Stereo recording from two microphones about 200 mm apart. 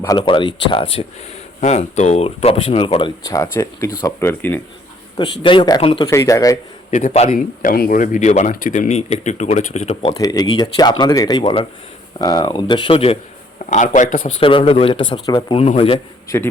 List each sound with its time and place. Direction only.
0.0 s speech: 20° left (ahead or behind)
5.1 s speech: 25° left (ahead or behind)
6.9 s speech: 35° left (ahead or behind)
7.3 s speech: 45° left (ahead or behind)
10.2 s speech: 20° left (ahead or behind); by 14.2 s 40° left (ahead or behind)
14.3 s speech: 25° left (ahead or behind)
16.3 s speech: 15° left (ahead or behind)